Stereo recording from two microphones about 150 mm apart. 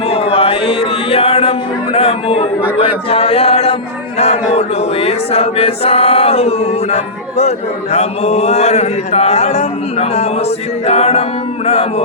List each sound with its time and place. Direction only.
0.1 s music: 40° left (ahead or behind)
2.8 s speech: 40° left (ahead or behind)
4.2 s choir: 45° left (ahead or behind)
10.8 s music: 45° left (ahead or behind)